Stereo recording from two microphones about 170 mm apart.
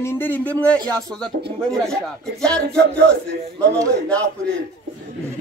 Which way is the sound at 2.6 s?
75° right (ahead or behind).